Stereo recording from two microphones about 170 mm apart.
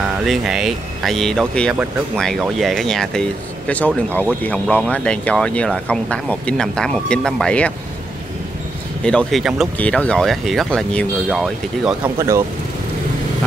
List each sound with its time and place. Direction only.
0.3 s speech: 5° right (ahead or behind)
9.0 s speech: 5° left (ahead or behind)
12.2 s speech: 15° right (ahead or behind)